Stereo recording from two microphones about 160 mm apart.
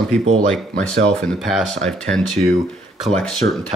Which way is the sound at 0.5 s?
5° left (ahead or behind).